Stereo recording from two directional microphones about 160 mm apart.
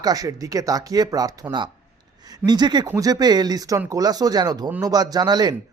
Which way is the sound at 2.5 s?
25° right (ahead or behind).